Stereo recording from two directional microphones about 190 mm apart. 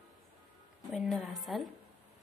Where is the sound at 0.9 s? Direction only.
Centre (ahead or behind).